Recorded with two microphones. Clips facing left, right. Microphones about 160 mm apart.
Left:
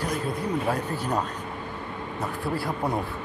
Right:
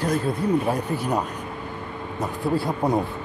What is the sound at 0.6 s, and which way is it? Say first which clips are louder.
Speech: right 3 dB; 15° right (ahead or behind).